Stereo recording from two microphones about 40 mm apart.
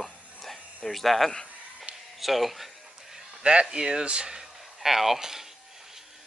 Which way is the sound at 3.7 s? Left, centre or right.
Right.